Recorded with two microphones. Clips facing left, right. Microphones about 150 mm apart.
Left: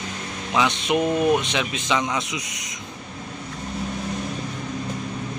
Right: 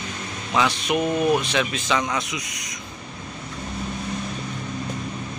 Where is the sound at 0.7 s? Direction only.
25° left (ahead or behind).